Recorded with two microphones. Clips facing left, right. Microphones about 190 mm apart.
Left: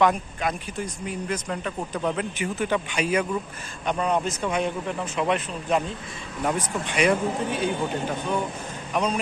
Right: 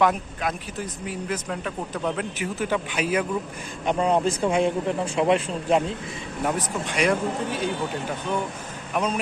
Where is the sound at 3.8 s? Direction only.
25° right (ahead or behind).